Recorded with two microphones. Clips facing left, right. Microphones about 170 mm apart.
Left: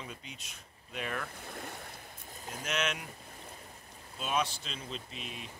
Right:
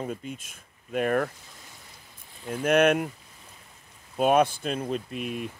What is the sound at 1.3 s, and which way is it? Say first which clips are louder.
Speech: left 8 dB; 60° left (ahead or behind).